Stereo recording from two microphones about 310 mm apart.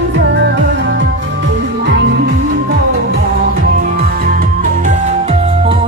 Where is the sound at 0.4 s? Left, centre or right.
Right.